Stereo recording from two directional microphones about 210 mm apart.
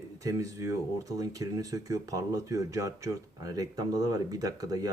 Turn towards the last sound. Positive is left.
turn(degrees=-15)  # may be behind; listen again after turning